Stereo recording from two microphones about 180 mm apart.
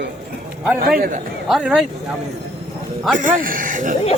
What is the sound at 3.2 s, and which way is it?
Speech, 50° right (ahead or behind).